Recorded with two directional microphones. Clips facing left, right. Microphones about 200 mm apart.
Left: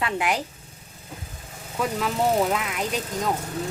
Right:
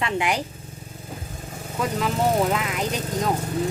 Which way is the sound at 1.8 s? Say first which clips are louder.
Right 1 dB; centre (ahead or behind).